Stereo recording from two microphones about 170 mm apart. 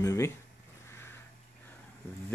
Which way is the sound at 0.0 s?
15° left (ahead or behind).